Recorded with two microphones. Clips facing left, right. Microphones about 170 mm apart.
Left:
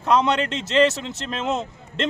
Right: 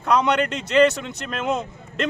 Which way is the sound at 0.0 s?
25° left (ahead or behind).